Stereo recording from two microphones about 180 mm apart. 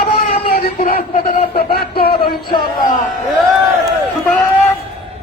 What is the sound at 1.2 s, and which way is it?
Speech, 55° left (ahead or behind).